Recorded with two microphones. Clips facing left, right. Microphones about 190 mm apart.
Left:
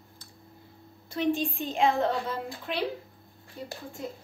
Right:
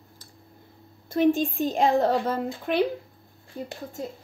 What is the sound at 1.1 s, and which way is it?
A woman's voice, 45° right (ahead or behind).